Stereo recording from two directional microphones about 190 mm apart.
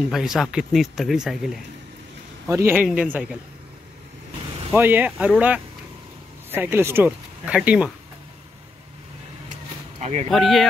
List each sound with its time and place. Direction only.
0.1 s speech: centre (ahead or behind)
2.4 s speech: 15° right (ahead or behind)
4.7 s speech: 10° right (ahead or behind)
6.5 s speech: 10° right (ahead or behind)
9.9 s a sound: 35° right (ahead or behind)
10.3 s speech: centre (ahead or behind)